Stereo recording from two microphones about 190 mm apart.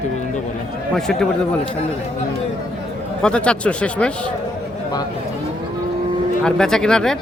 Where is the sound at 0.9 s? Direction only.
5° left (ahead or behind).